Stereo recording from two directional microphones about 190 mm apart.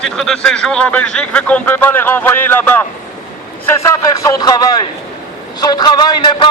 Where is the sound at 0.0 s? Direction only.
Centre (ahead or behind).